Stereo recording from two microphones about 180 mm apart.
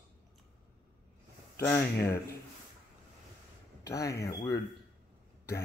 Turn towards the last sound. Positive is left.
turn(degrees=20)  # may be behind; listen again after turning